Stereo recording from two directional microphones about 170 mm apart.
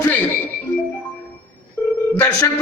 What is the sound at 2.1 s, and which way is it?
Speech, 15° left (ahead or behind).